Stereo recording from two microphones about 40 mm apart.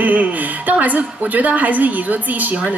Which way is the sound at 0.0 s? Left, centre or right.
Right.